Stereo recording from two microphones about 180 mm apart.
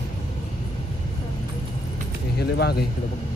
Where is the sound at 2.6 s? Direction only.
65° left (ahead or behind).